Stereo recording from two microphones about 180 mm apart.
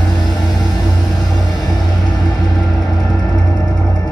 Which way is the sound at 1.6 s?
20° left (ahead or behind).